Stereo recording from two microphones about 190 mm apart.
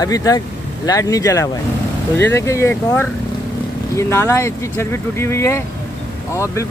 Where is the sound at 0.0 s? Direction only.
20° left (ahead or behind).